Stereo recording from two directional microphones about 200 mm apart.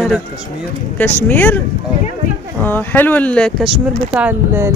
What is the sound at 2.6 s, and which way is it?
Speech, 10° left (ahead or behind).